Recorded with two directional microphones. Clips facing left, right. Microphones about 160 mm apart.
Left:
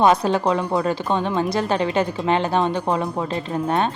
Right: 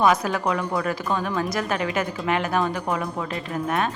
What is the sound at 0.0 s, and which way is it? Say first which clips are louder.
Speech: left 4 dB; 30° left (ahead or behind).